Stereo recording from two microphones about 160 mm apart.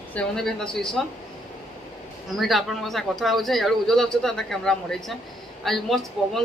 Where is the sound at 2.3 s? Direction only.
Centre (ahead or behind).